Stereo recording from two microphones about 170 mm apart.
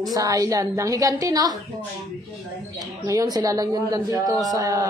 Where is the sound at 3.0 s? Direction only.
20° right (ahead or behind).